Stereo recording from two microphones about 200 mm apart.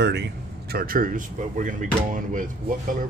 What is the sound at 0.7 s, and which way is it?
Speech, 45° right (ahead or behind).